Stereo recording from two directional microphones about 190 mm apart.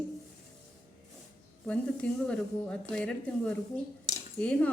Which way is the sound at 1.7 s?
5° left (ahead or behind).